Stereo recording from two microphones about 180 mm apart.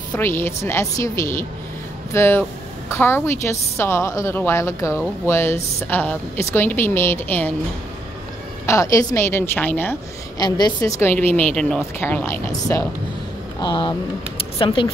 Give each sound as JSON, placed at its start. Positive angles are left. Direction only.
{"t": 0.1, "sound": "a woman's voice", "side_deg": 15}
{"t": 8.6, "sound": "a woman's voice", "side_deg": 15}
{"t": 13.6, "sound": "speech", "side_deg": 25}